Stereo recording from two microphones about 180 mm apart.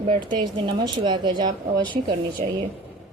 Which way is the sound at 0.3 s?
25° right (ahead or behind).